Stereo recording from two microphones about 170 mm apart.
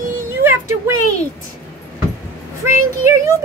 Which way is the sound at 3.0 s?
15° right (ahead or behind).